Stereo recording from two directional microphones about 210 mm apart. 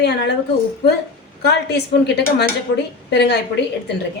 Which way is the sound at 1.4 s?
50° left (ahead or behind).